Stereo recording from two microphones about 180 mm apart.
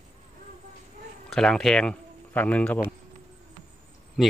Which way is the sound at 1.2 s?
Centre (ahead or behind).